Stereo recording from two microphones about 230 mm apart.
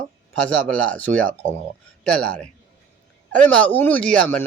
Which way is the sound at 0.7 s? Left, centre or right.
Centre.